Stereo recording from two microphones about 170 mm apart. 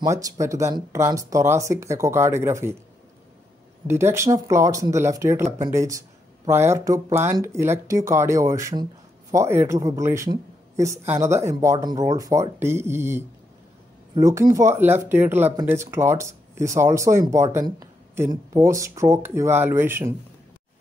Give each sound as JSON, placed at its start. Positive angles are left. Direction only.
{"t": 0.0, "sound": "speech", "side_deg": -20}
{"t": 3.8, "sound": "speech", "side_deg": -15}